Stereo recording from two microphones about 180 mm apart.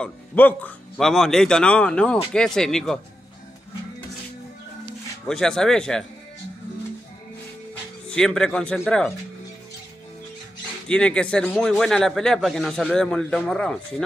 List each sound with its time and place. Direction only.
0.0 s speech: 10° left (ahead or behind)
5.3 s speech: 5° left (ahead or behind)
8.1 s speech: 5° left (ahead or behind)
10.9 s speech: 5° left (ahead or behind)